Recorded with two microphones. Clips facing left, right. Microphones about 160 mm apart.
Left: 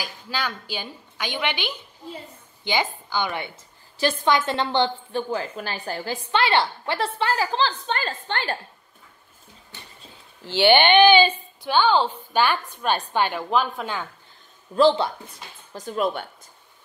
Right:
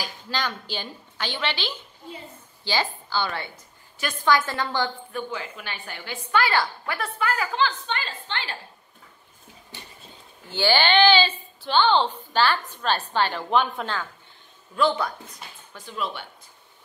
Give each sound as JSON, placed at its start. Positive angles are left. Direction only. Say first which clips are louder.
{"t": 0.0, "sound": "a woman's voice", "louder": "even", "side_deg": 10}
{"t": 5.3, "sound": "a woman's voice", "louder": "left 6 dB", "side_deg": 40}
{"t": 6.3, "sound": "a woman's voice", "louder": "left 2 dB", "side_deg": 25}
{"t": 10.6, "sound": "speech", "louder": "left 4 dB", "side_deg": 20}
{"t": 13.5, "sound": "speech", "louder": "even", "side_deg": 0}
{"t": 14.8, "sound": "a woman's voice", "louder": "left 5 dB", "side_deg": 30}
{"t": 15.7, "sound": "speech", "louder": "left 7 dB", "side_deg": 45}